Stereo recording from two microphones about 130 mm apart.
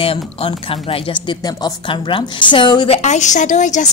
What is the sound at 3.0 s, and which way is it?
Speech, 65° left (ahead or behind).